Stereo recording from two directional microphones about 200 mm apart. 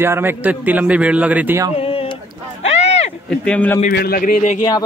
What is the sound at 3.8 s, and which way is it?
Speech, 45° left (ahead or behind).